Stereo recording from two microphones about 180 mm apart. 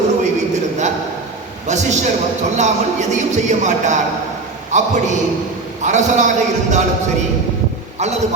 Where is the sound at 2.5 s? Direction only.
40° right (ahead or behind).